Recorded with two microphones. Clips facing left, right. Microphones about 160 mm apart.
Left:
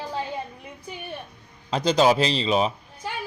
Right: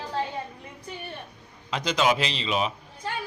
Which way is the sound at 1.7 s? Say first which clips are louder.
Left 5 dB; 35° left (ahead or behind).